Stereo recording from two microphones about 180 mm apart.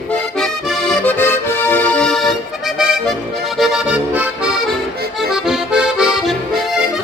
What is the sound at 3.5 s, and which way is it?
Accordion, centre (ahead or behind).